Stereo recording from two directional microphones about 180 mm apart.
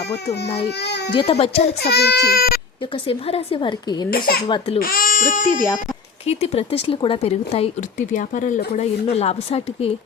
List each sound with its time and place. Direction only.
0.8 s a child's voice: 70° left (ahead or behind)
1.1 s speech: 30° left (ahead or behind)
1.8 s speech: 65° left (ahead or behind)
2.9 s a woman's voice: 30° left (ahead or behind)
4.8 s speech: 50° left (ahead or behind)
6.2 s speech: 35° left (ahead or behind)